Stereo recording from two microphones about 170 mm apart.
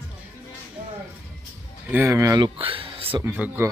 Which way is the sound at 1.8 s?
15° right (ahead or behind).